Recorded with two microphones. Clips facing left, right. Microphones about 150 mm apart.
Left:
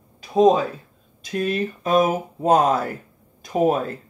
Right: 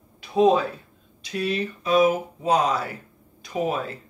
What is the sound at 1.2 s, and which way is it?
Speech, 45° left (ahead or behind).